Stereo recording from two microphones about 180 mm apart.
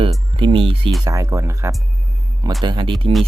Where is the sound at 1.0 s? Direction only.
15° right (ahead or behind).